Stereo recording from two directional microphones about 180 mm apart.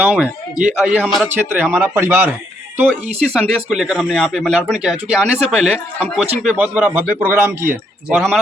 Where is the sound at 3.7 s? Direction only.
Centre (ahead or behind).